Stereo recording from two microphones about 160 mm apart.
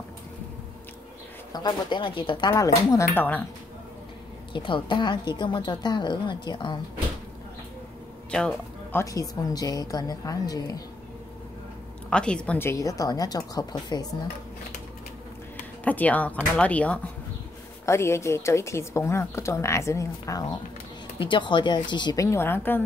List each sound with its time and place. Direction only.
1.5 s a woman's voice: 25° left (ahead or behind)
4.5 s a woman's voice: 30° left (ahead or behind)
8.3 s speech: 5° left (ahead or behind)
9.0 s a woman's voice: 20° left (ahead or behind)
12.1 s a woman's voice: 5° left (ahead or behind); by 14.0 s 25° left (ahead or behind)
15.8 s speech: 10° left (ahead or behind)
21.2 s a woman's voice: 30° left (ahead or behind); by 22.8 s 15° left (ahead or behind)